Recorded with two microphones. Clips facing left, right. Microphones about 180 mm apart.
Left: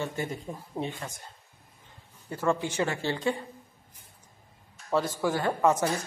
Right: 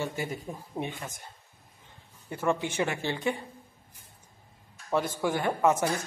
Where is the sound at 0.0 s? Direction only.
10° right (ahead or behind).